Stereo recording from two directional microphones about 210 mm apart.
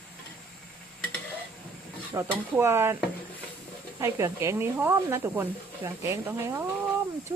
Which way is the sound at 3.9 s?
15° right (ahead or behind).